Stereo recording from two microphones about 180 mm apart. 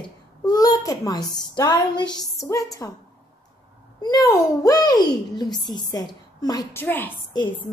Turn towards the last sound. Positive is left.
turn(degrees=25)  # may be behind; listen again after turning